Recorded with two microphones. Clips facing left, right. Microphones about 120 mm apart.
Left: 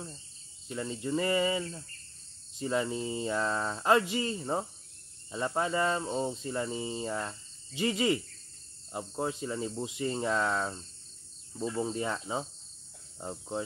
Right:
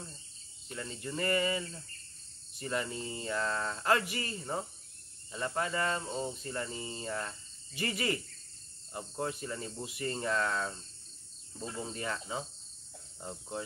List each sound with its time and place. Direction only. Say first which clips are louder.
0.7 s speech: left 6 dB; 20° left (ahead or behind)
2.6 s speech: left 5 dB; 20° left (ahead or behind)